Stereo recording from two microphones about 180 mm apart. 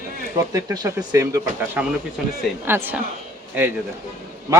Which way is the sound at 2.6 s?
10° right (ahead or behind).